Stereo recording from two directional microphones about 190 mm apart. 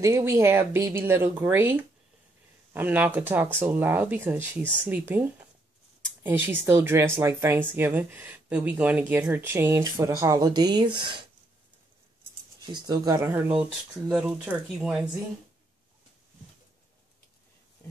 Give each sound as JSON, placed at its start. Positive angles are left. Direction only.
{"t": 0.0, "sound": "speech", "side_deg": -15}
{"t": 12.7, "sound": "speech", "side_deg": -20}